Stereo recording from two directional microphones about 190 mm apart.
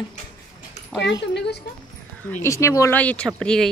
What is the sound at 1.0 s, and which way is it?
Speech, 65° left (ahead or behind).